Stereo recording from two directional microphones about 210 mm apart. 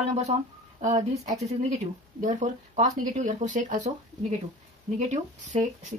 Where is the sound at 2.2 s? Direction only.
35° right (ahead or behind).